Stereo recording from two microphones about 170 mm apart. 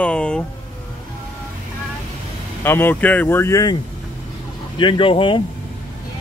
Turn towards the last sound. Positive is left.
turn(degrees=30)  # may be behind; listen again after turning